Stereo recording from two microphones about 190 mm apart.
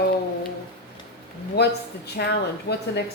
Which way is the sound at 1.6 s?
60° left (ahead or behind).